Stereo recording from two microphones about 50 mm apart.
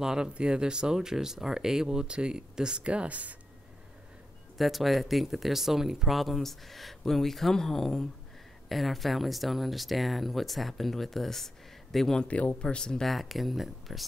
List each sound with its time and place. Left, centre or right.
0.0 s speech: centre; by 3.3 s right
4.6 s speech: centre
12.2 s speech: left
13.0 s speech: centre